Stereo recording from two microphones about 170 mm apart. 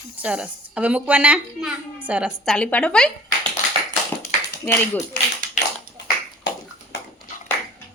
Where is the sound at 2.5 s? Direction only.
5° left (ahead or behind).